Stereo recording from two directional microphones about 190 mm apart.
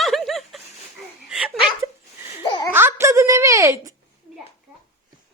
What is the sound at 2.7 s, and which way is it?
A woman's voice, 10° right (ahead or behind).